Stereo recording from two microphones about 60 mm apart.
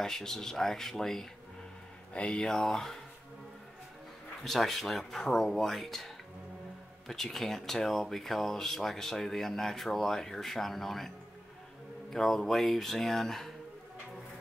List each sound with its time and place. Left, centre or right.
0.0 s speech: centre
2.5 s speech: centre
4.4 s speech: centre
12.1 s speech: centre